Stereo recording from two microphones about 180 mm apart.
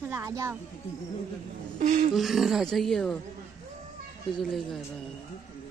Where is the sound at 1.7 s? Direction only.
45° right (ahead or behind).